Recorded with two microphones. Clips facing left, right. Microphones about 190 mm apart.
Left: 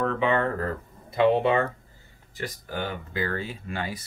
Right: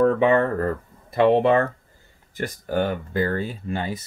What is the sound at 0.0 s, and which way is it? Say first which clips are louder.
Speech: right 7 dB; 45° right (ahead or behind).